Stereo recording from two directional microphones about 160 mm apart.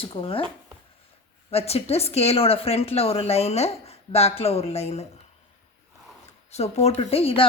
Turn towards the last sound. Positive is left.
turn(degrees=35)  # may be behind; listen again after turning